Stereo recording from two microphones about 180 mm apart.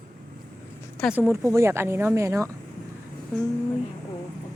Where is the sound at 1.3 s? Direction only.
15° right (ahead or behind).